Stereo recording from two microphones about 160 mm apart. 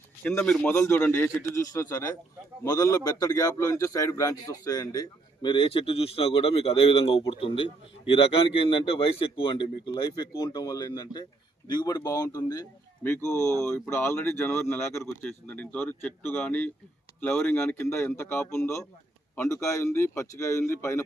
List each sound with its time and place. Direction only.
0.3 s a man's voice: 5° left (ahead or behind)